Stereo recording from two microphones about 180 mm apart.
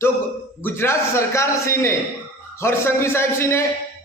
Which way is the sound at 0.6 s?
15° left (ahead or behind).